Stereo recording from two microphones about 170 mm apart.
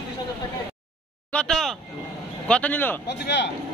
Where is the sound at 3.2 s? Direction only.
90° left.